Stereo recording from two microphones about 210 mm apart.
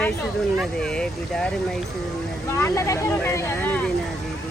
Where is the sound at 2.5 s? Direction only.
15° left (ahead or behind).